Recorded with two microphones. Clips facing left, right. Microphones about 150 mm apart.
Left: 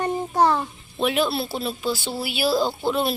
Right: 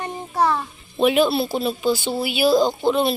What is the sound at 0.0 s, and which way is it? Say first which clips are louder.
Child singing: left 2 dB; 35° left (ahead or behind).